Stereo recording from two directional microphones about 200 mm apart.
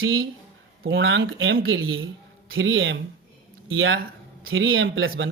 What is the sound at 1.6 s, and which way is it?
Speech, 90° right.